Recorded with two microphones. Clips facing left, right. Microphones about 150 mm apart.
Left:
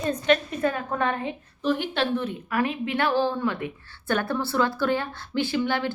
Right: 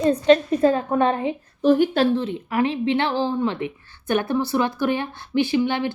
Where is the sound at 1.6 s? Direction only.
45° right (ahead or behind).